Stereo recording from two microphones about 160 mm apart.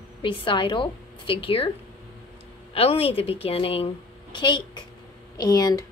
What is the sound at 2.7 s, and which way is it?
A woman's voice, 35° left (ahead or behind).